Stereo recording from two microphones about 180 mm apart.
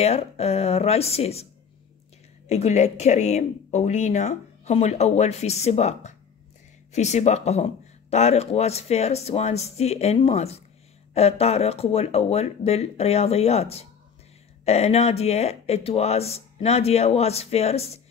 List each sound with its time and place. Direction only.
0.0 s speech: 35° left (ahead or behind)